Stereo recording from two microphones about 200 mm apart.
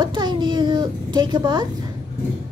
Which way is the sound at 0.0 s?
20° right (ahead or behind).